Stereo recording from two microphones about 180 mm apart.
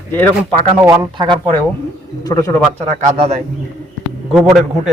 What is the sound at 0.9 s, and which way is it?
Speech, 25° right (ahead or behind).